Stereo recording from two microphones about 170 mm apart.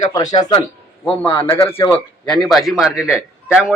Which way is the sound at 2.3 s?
Centre (ahead or behind).